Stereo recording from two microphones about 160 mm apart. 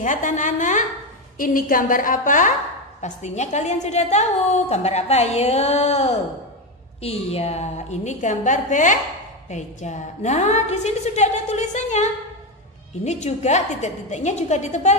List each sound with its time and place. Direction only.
0.0 s a woman's voice: 50° left (ahead or behind)